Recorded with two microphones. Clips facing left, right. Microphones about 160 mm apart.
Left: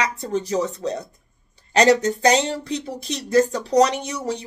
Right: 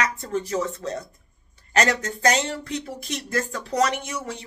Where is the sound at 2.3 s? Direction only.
30° left (ahead or behind).